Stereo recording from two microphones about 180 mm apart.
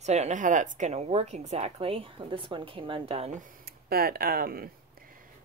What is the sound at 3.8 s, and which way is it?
Speech, 60° right (ahead or behind).